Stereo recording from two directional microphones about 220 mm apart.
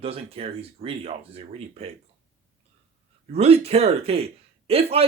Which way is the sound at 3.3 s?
25° right (ahead or behind).